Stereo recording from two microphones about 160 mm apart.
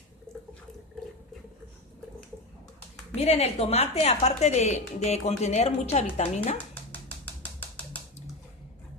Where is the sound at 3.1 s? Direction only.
40° left (ahead or behind).